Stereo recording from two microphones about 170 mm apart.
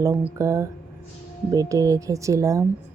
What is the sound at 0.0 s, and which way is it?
Speech, 15° right (ahead or behind).